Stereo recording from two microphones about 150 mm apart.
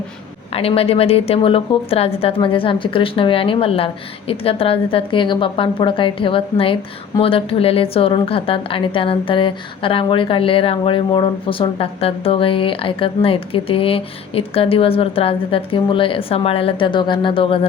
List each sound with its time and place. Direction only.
0.5 s a woman's voice: 40° left (ahead or behind)